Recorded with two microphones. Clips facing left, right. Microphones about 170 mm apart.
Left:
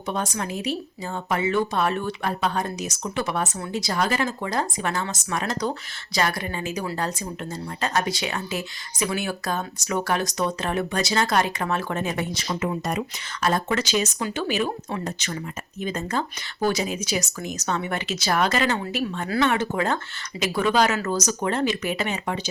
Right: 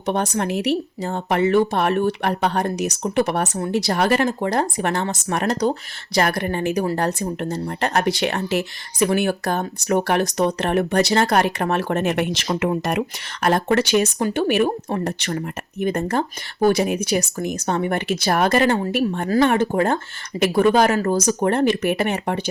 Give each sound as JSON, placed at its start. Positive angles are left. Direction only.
{"t": 0.0, "sound": "speech", "side_deg": -65}
{"t": 12.5, "sound": "speech", "side_deg": -70}